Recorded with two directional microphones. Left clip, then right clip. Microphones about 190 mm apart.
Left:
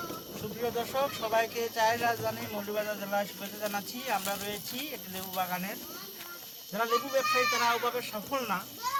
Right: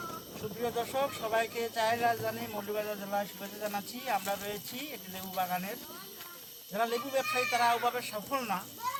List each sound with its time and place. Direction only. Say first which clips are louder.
0.6 s speech: left 1 dB; 10° right (ahead or behind)
6.7 s speech: left 3 dB; 30° right (ahead or behind)
8.8 s children playing: left 4 dB; 65° left (ahead or behind)